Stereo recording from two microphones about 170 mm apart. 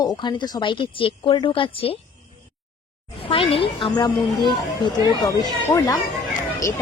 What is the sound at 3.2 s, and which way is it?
Speech, 30° left (ahead or behind).